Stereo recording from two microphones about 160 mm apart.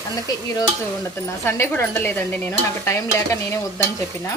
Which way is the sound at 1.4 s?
10° left (ahead or behind).